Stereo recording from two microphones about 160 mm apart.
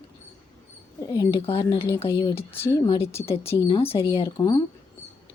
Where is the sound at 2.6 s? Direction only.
15° left (ahead or behind).